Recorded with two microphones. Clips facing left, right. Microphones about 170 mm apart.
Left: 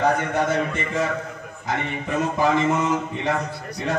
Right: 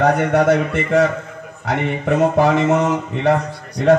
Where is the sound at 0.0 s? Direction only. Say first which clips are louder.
Right 6 dB; 65° right (ahead or behind).